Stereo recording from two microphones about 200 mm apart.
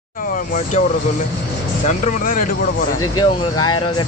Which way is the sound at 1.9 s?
40° left (ahead or behind).